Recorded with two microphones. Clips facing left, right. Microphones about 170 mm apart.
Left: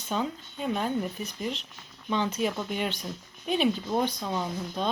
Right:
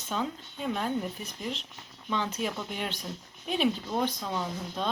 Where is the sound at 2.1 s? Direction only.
Centre (ahead or behind).